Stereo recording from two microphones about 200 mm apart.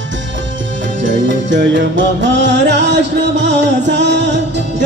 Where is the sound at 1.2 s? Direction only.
65° right (ahead or behind).